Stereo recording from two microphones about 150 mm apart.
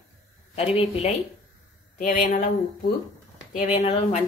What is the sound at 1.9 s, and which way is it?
Speech, 60° left (ahead or behind).